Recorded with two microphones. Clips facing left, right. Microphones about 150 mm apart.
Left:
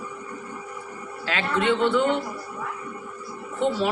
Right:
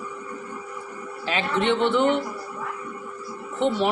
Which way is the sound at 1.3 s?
20° right (ahead or behind).